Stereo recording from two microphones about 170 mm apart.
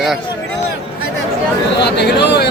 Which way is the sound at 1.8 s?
80° left.